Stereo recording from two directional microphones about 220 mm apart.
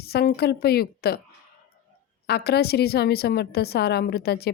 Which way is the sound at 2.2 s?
45° left (ahead or behind).